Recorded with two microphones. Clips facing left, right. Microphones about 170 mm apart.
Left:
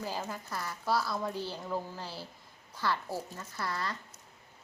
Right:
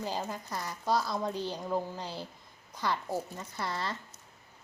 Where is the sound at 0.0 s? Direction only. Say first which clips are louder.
Right 2 dB; 20° right (ahead or behind).